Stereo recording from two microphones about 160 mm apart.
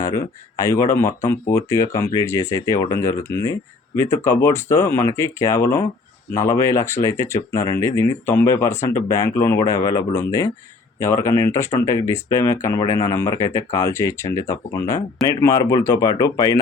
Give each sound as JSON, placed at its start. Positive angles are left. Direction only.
{"t": 0.0, "sound": "speech", "side_deg": 20}